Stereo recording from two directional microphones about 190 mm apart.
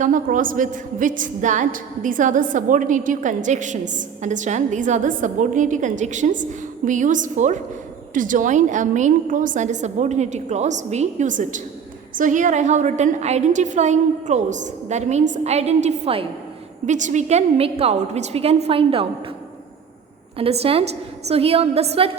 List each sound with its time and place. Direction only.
0.0 s a woman's voice: 45° right (ahead or behind); by 19.0 s 30° right (ahead or behind)
20.4 s a woman's voice: 30° right (ahead or behind)